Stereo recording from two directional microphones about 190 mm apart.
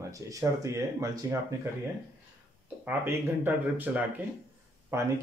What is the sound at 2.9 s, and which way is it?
Speech, 10° right (ahead or behind).